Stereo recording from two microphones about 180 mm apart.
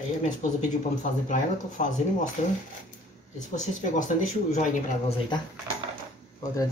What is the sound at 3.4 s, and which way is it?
Speech, 45° left (ahead or behind).